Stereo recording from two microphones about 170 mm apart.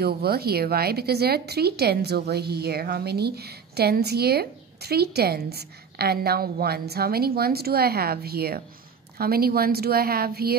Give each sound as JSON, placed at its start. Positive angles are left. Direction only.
{"t": 0.0, "sound": "speech", "side_deg": -65}